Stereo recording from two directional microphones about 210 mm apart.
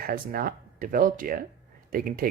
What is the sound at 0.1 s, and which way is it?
Speech, 45° right (ahead or behind).